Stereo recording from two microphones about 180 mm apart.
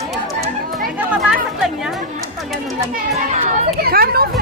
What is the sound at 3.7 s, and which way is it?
Speech, 55° right (ahead or behind).